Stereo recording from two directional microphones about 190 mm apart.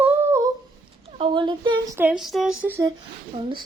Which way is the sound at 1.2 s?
25° right (ahead or behind).